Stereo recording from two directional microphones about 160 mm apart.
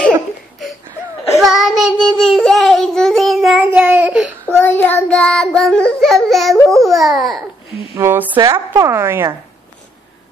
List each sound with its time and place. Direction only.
1.4 s child singing: centre (ahead or behind)
4.5 s child singing: 15° left (ahead or behind)
6.2 s a sound: centre (ahead or behind)
6.7 s babbling: centre (ahead or behind)
7.9 s a sound: 15° right (ahead or behind)
8.4 s a woman's voice: 20° right (ahead or behind)